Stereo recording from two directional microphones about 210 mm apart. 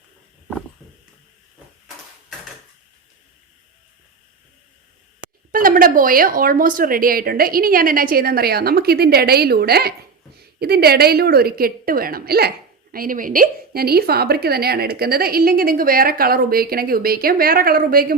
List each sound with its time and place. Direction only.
5.5 s a woman's voice: 40° right (ahead or behind)